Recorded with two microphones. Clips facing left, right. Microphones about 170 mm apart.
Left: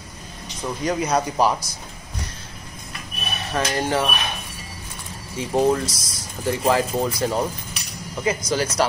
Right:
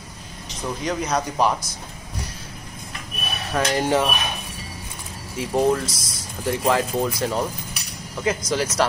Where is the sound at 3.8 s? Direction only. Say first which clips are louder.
Right 2 dB; 15° right (ahead or behind).